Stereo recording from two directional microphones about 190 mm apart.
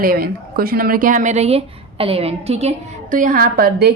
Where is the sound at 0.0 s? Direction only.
50° right (ahead or behind).